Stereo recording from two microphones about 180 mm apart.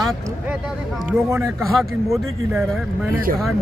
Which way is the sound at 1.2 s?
15° right (ahead or behind).